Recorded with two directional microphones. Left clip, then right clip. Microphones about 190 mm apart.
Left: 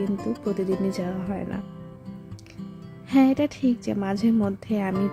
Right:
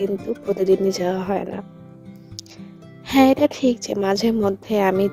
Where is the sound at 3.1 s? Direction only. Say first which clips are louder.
Right 6 dB; 45° right (ahead or behind).